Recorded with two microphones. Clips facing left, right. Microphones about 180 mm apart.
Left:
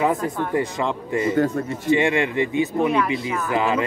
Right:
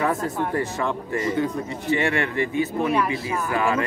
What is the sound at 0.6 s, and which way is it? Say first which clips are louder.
Speech: left 2 dB; 15° left (ahead or behind).